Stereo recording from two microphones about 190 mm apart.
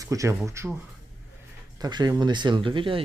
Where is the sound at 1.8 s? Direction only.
20° right (ahead or behind).